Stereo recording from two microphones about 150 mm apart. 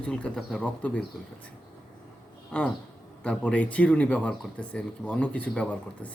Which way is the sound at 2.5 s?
5° left (ahead or behind).